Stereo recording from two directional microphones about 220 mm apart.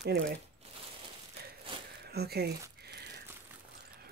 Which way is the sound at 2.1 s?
45° right (ahead or behind).